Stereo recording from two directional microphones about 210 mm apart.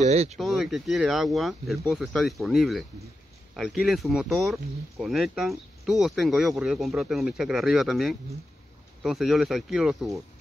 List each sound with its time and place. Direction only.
0.0 s speech: 30° right (ahead or behind)
0.4 s speech: centre (ahead or behind)